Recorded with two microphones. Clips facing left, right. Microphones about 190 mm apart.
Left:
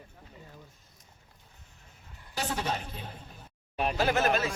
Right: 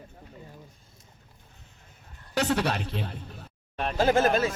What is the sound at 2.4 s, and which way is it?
Speech, 70° right (ahead or behind).